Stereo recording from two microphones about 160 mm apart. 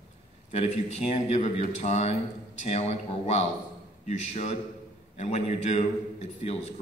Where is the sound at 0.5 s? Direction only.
40° left (ahead or behind).